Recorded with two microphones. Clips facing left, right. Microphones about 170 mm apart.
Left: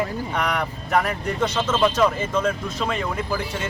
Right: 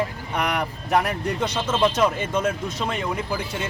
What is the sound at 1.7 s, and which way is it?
Speech, 15° right (ahead or behind).